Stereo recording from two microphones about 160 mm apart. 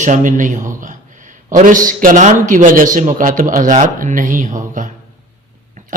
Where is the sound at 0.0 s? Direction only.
50° right (ahead or behind).